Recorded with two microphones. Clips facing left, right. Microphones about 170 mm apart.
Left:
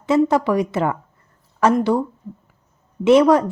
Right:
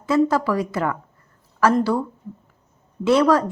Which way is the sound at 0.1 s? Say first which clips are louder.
Left 2 dB; 20° left (ahead or behind).